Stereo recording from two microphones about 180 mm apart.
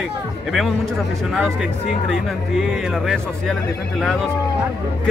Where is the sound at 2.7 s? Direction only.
Centre (ahead or behind).